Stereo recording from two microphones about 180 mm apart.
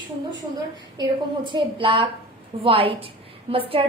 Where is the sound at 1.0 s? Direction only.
25° right (ahead or behind).